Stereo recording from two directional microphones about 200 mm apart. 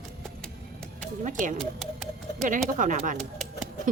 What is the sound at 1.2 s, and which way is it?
Music, 40° right (ahead or behind).